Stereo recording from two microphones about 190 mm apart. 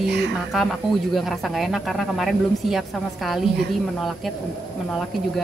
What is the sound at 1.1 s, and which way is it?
Speech, centre (ahead or behind).